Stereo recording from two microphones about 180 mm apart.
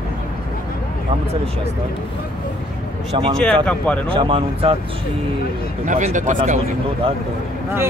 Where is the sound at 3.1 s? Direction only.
35° right (ahead or behind).